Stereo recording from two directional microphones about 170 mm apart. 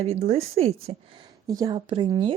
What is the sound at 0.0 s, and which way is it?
Speech, 40° right (ahead or behind).